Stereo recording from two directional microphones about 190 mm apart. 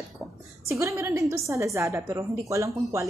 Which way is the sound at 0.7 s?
15° right (ahead or behind).